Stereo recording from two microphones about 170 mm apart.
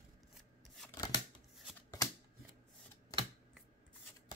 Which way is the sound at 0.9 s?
25° left (ahead or behind).